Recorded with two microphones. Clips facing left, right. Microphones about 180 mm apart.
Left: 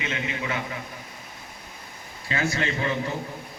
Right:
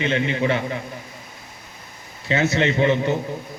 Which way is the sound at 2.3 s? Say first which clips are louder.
Right 7 dB; 25° right (ahead or behind).